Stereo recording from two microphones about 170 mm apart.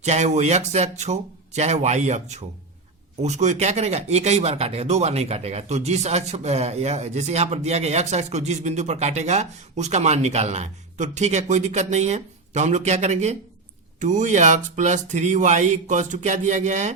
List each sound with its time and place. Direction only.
0.0 s speech: 40° right (ahead or behind)